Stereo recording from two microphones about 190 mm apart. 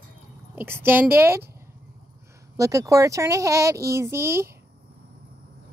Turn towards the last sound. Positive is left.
turn(degrees=-15)  # may be behind; listen again after turning